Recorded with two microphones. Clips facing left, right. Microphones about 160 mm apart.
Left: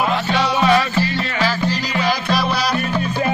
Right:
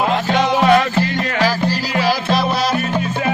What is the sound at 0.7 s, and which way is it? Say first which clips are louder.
Music: right 3 dB; 55° right (ahead or behind).